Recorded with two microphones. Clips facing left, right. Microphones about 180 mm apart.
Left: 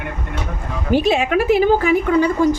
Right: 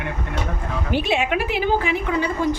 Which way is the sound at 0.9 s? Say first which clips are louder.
Left 6 dB; 40° left (ahead or behind).